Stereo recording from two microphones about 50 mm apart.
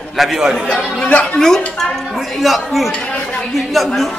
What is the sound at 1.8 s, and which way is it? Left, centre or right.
Speech, centre.